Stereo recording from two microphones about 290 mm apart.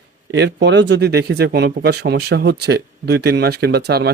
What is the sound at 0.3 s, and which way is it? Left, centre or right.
Speech, right.